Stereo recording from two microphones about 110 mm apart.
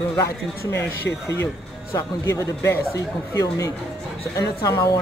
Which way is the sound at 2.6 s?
30° left (ahead or behind).